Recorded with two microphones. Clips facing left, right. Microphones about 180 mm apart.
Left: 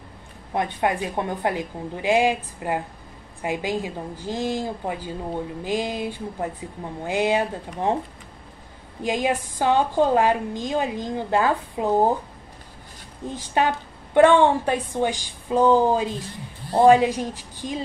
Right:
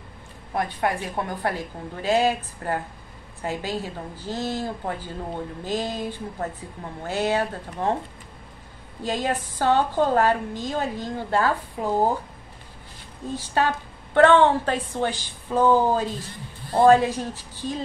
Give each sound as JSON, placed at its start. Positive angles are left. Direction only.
{"t": 0.5, "sound": "a woman's voice", "side_deg": 20}
{"t": 9.0, "sound": "a woman's voice", "side_deg": 15}
{"t": 13.3, "sound": "a woman's voice", "side_deg": 15}